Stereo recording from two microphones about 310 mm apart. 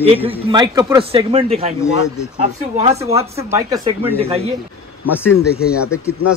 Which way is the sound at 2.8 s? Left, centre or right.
Centre.